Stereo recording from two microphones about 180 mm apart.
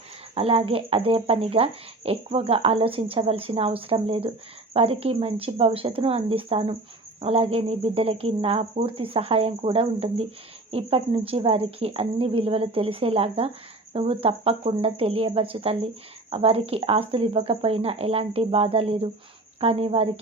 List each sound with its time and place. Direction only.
0.3 s speech: 30° right (ahead or behind)